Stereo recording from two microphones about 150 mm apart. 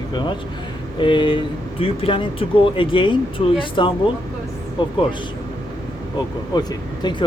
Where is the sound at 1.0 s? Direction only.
35° left (ahead or behind).